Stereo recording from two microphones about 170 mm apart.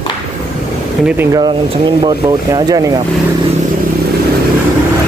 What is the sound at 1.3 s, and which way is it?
Speech, 25° right (ahead or behind).